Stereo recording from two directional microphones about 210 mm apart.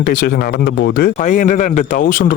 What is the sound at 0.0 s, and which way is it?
A man's voice, 40° left (ahead or behind).